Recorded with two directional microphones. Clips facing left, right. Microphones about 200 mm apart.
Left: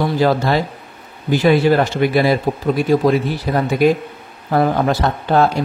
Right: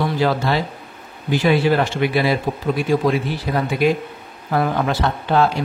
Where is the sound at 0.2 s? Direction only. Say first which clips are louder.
Left 5 dB; 40° left (ahead or behind).